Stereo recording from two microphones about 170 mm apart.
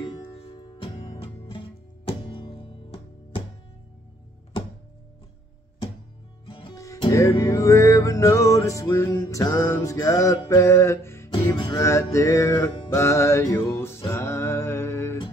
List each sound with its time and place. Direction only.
0.0 s music: 25° left (ahead or behind)
6.4 s music: 30° left (ahead or behind)
6.7 s music: 20° left (ahead or behind)